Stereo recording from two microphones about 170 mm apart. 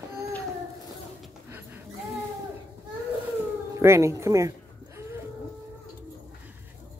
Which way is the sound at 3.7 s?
15° right (ahead or behind).